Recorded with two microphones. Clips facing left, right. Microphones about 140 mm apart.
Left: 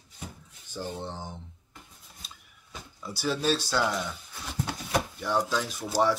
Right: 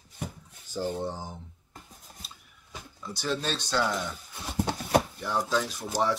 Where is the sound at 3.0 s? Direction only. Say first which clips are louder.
Left 3 dB; 10° left (ahead or behind).